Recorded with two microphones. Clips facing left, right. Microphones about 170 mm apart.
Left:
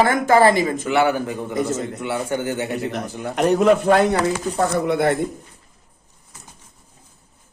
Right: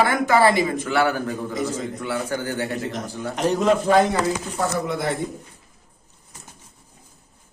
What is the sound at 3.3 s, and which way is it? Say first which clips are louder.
A man's voice: left 4 dB; 60° left (ahead or behind).